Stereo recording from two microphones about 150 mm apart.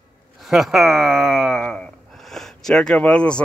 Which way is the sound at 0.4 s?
Centre (ahead or behind).